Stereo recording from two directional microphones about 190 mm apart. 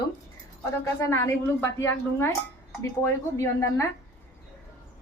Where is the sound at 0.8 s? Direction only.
15° left (ahead or behind).